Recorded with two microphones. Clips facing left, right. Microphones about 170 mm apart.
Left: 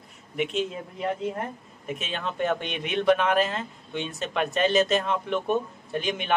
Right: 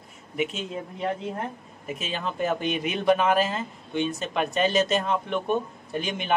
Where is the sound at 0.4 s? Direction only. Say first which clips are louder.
Left 2 dB; centre (ahead or behind).